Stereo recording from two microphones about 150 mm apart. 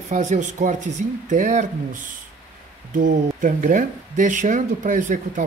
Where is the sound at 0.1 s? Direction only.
55° right (ahead or behind).